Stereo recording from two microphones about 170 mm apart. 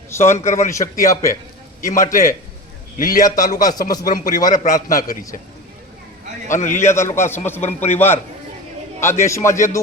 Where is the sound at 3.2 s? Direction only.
20° left (ahead or behind).